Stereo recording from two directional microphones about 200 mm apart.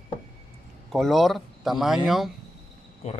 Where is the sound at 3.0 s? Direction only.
35° left (ahead or behind).